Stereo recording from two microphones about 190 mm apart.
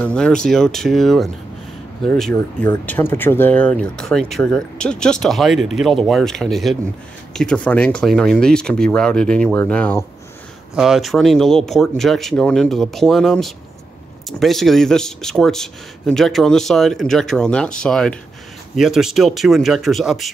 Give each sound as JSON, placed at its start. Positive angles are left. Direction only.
{"t": 0.0, "sound": "speech", "side_deg": 5}
{"t": 10.7, "sound": "speech", "side_deg": 0}